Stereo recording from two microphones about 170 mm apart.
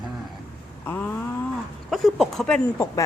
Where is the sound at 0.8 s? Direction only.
10° left (ahead or behind).